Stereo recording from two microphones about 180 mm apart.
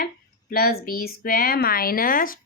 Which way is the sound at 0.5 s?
55° left (ahead or behind).